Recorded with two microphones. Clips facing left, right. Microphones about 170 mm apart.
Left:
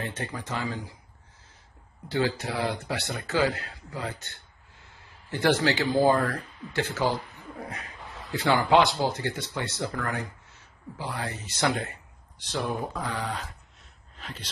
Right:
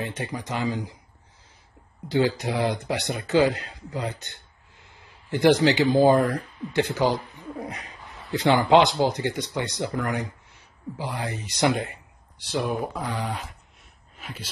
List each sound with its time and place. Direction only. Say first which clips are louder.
0.0 s speech: right 3 dB; 15° right (ahead or behind)
2.0 s speech: right 4 dB; 15° right (ahead or behind)
8.3 s speech: right 4 dB; 20° right (ahead or behind)
14.1 s a sound: right 2 dB; 10° right (ahead or behind)